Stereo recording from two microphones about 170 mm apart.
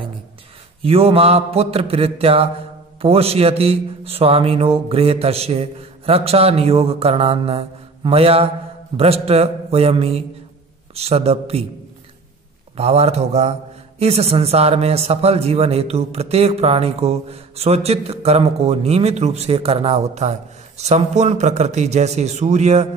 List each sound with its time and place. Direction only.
0.8 s a man's voice: 35° right (ahead or behind)
12.7 s a man's voice: 40° right (ahead or behind)